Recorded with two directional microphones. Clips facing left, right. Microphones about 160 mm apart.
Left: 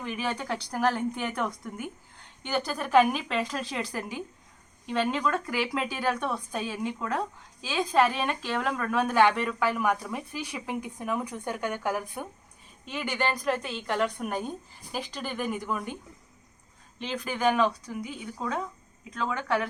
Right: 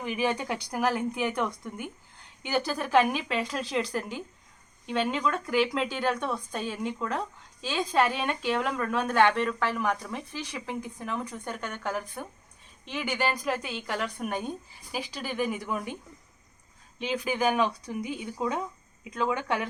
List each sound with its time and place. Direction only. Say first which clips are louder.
0.0 s a woman's voice: right 3 dB; 10° right (ahead or behind)
17.0 s speech: right 1 dB; 5° right (ahead or behind)